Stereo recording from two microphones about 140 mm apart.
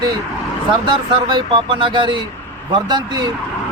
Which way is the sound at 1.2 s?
35° right (ahead or behind).